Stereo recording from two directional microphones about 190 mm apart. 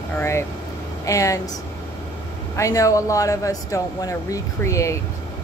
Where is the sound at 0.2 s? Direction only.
15° left (ahead or behind).